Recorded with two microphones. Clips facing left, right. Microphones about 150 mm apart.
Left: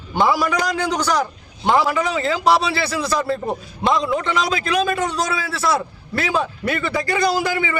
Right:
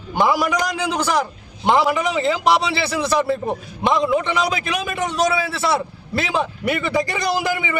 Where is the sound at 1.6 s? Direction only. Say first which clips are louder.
Right 1 dB; 20° right (ahead or behind).